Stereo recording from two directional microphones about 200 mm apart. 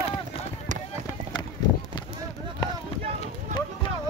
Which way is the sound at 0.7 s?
40° right (ahead or behind).